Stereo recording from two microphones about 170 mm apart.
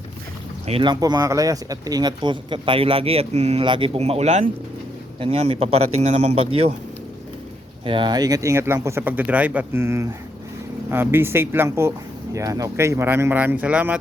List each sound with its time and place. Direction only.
0.7 s a man's voice: 25° right (ahead or behind)
7.9 s speech: 30° right (ahead or behind); by 14.0 s 10° right (ahead or behind)